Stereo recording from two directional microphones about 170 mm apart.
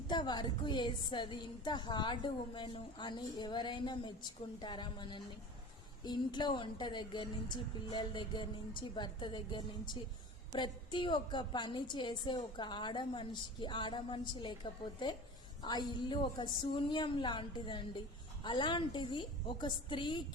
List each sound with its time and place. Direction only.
0.1 s a woman's voice: 25° left (ahead or behind)